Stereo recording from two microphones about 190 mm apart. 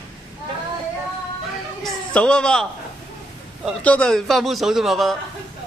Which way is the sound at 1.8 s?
5° left (ahead or behind).